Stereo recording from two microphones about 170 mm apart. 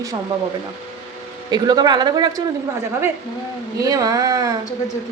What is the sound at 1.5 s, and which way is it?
Speech, 25° right (ahead or behind).